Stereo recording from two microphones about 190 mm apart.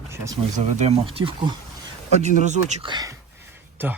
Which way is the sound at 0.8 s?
30° right (ahead or behind).